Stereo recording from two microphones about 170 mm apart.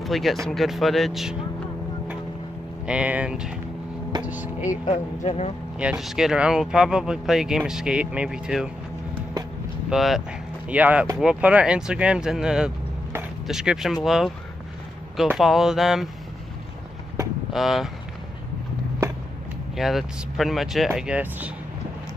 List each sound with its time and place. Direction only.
0.0 s speech: centre (ahead or behind)
2.9 s speech: 5° right (ahead or behind)
4.8 s speech: 35° left (ahead or behind)
5.8 s speech: 5° right (ahead or behind)
9.8 s speech: centre (ahead or behind)
17.5 s speech: centre (ahead or behind)
19.7 s speech: centre (ahead or behind)